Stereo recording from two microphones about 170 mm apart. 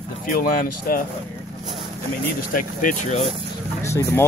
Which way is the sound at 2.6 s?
50° left (ahead or behind).